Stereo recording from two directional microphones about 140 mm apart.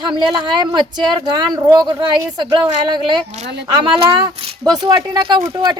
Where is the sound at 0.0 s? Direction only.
35° right (ahead or behind).